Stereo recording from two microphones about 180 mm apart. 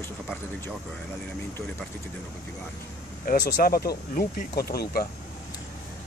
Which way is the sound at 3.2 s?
55° left (ahead or behind).